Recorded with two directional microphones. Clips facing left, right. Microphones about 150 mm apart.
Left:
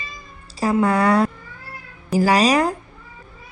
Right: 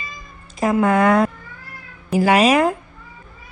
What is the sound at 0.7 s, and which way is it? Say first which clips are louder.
Speech: right 2 dB; 35° left (ahead or behind).